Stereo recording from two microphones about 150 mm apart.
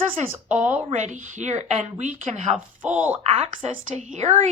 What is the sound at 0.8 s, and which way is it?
Speech, 50° right (ahead or behind).